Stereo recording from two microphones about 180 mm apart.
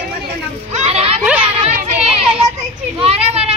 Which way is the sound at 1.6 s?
35° right (ahead or behind).